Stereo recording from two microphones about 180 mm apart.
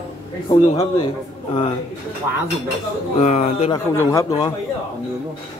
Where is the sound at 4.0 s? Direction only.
20° left (ahead or behind).